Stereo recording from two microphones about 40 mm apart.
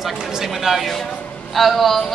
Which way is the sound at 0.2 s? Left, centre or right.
Centre.